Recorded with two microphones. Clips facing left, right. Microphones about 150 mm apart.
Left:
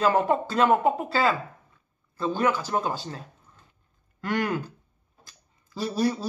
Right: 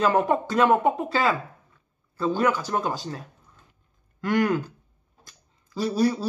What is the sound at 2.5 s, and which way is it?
Speech, 10° left (ahead or behind).